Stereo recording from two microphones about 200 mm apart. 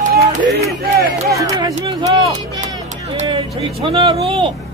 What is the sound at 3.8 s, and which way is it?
Speech, 30° right (ahead or behind).